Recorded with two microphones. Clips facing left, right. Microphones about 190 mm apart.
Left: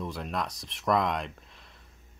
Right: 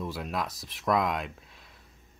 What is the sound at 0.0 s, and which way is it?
Speech, 5° right (ahead or behind).